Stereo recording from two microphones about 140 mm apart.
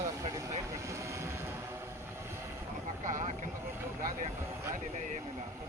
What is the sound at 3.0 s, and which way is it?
Vehicle, 65° right (ahead or behind).